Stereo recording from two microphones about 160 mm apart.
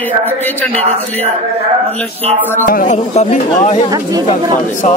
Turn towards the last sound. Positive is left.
turn(degrees=45)  # may be behind; listen again after turning